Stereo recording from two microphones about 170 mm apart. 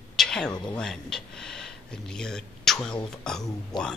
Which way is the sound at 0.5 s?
25° left (ahead or behind).